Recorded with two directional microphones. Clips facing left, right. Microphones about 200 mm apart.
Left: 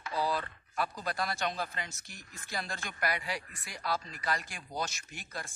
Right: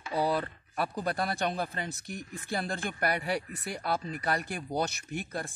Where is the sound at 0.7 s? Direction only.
55° right (ahead or behind).